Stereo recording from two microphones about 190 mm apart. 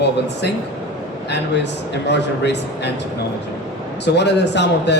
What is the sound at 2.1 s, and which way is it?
Speech, 65° left (ahead or behind).